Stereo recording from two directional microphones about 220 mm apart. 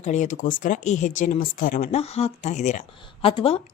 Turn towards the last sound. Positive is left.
turn(degrees=25)  # may be behind; listen again after turning